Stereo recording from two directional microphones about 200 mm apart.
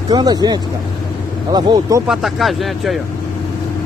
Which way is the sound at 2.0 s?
Centre (ahead or behind).